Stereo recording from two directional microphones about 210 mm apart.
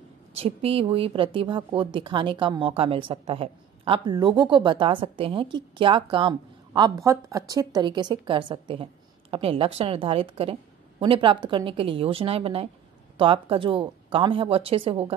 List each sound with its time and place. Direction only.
0.4 s a woman's voice: 30° right (ahead or behind)